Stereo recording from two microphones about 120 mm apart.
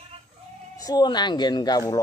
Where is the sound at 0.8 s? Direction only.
35° left (ahead or behind).